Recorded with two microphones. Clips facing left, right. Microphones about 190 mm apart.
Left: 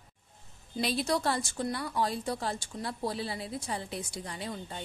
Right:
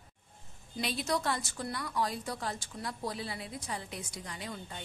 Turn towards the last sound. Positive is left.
turn(degrees=30)  # may be behind; listen again after turning